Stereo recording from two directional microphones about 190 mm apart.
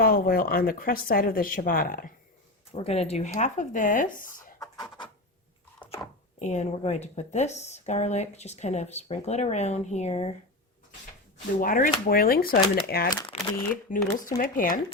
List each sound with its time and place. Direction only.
0.0 s speech: 50° left (ahead or behind)
2.7 s speech: 35° left (ahead or behind)
6.4 s speech: 35° left (ahead or behind)
11.6 s speech: 50° left (ahead or behind)
13.3 s a sound: 35° left (ahead or behind)
14.2 s speech: 45° left (ahead or behind)